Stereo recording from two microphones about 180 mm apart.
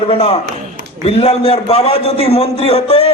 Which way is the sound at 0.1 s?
30° left (ahead or behind).